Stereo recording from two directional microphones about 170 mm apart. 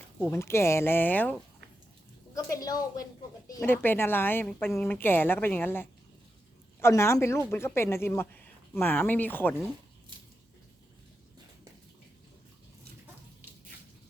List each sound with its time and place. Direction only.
0.3 s a woman's voice: 15° left (ahead or behind)